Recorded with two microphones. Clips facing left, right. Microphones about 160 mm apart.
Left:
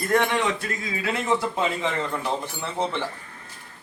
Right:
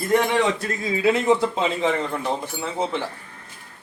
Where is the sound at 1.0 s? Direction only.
20° right (ahead or behind).